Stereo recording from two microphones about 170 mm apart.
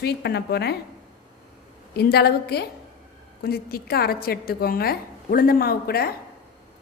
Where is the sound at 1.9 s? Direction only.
70° left (ahead or behind).